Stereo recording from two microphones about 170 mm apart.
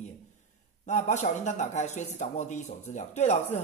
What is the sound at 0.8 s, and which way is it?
Speech, 45° left (ahead or behind).